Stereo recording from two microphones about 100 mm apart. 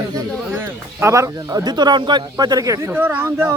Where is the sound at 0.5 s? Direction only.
25° right (ahead or behind).